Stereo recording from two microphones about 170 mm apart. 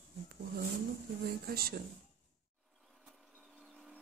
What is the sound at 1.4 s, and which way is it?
Speech, 65° right (ahead or behind).